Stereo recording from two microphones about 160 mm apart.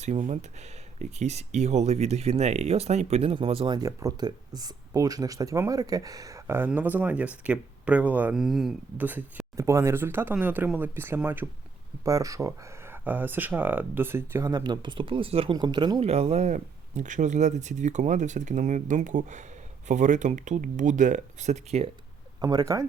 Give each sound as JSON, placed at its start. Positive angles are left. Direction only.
{"t": 0.0, "sound": "speech", "side_deg": -45}
{"t": 16.0, "sound": "speech", "side_deg": -40}
{"t": 22.4, "sound": "speech", "side_deg": -25}